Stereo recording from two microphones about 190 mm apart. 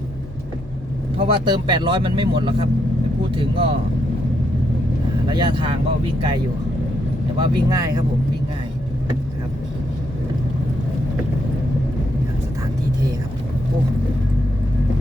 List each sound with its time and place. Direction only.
1.2 s speech: 25° right (ahead or behind)
5.3 s speech: 25° right (ahead or behind)
7.3 s speech: 20° right (ahead or behind)